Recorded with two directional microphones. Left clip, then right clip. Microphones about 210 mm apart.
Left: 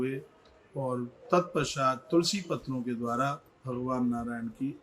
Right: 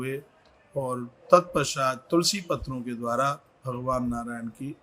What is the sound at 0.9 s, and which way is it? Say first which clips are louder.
Speech: right 9 dB; 50° right (ahead or behind).